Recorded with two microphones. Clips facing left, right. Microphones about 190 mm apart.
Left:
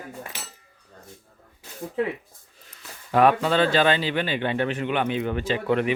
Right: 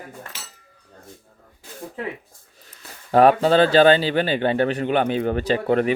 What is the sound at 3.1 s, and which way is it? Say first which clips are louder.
A man's voice: right 5 dB; 35° right (ahead or behind).